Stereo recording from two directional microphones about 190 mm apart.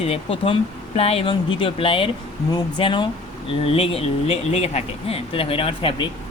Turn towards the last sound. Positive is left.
turn(degrees=30)  # may be behind; listen again after turning